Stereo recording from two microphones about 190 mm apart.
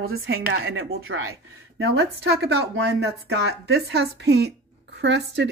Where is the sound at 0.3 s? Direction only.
75° right (ahead or behind).